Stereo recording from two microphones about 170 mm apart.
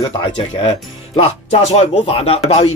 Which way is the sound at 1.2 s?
35° left (ahead or behind).